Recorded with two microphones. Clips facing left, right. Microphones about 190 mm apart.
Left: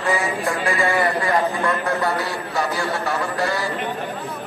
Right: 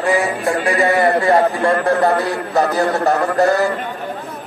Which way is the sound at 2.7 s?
40° right (ahead or behind).